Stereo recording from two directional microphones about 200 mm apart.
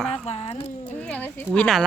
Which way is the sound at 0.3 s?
30° left (ahead or behind).